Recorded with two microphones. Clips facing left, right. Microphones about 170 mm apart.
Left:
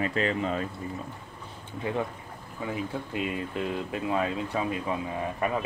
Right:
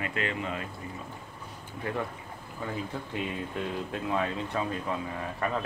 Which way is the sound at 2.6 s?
10° left (ahead or behind).